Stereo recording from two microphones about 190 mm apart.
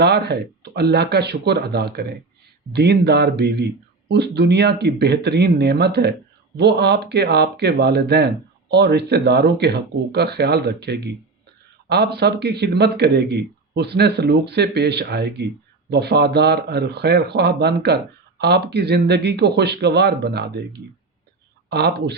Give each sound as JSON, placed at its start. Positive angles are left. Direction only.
{"t": 0.0, "sound": "speech", "side_deg": -60}
{"t": 21.7, "sound": "speech", "side_deg": -60}